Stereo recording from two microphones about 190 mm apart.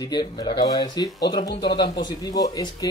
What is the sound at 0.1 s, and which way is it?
Speech, 20° left (ahead or behind).